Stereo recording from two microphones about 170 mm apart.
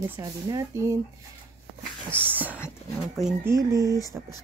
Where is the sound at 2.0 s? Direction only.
10° right (ahead or behind).